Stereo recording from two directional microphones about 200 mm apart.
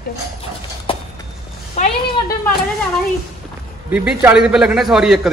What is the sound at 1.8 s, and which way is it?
Speech, 35° left (ahead or behind).